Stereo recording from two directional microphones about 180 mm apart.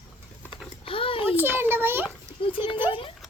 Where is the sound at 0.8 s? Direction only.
30° left (ahead or behind).